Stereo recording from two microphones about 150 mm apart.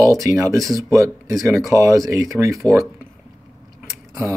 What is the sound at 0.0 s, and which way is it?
Speech, 20° right (ahead or behind).